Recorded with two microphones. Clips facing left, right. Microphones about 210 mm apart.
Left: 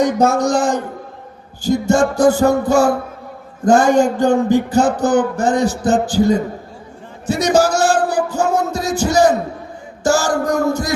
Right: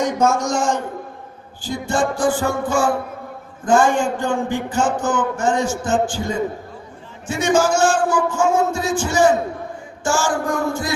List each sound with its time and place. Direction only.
0.0 s a man's voice: 35° left (ahead or behind)
8.0 s a sound: 35° left (ahead or behind)
10.0 s a man's voice: 40° left (ahead or behind)